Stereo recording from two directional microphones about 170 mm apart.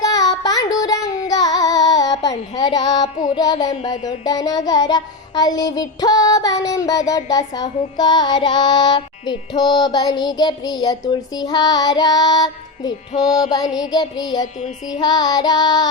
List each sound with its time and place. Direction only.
0.0 s child singing: 20° left (ahead or behind)
13.2 s music: 5° right (ahead or behind)
13.9 s child singing: 25° left (ahead or behind)